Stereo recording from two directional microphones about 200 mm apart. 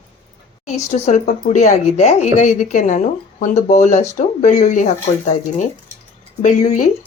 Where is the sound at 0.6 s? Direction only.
35° left (ahead or behind).